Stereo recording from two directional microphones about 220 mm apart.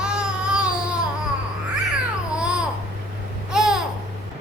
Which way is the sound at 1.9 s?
5° right (ahead or behind).